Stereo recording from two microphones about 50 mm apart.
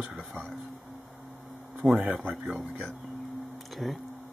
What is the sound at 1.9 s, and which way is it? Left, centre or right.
Speech, right.